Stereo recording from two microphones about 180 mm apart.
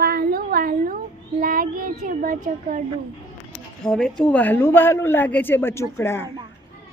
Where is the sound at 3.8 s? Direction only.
5° left (ahead or behind).